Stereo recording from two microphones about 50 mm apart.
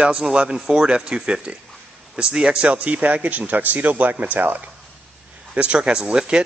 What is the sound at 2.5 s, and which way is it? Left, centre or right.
Speech, right.